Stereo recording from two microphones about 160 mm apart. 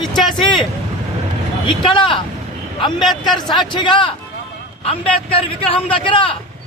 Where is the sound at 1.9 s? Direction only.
30° left (ahead or behind).